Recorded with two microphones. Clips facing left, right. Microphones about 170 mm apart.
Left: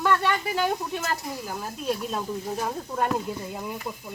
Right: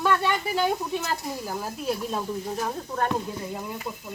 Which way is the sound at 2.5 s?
10° left (ahead or behind).